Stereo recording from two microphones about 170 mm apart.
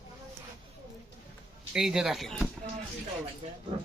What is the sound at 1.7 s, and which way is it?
Speech, 5° right (ahead or behind).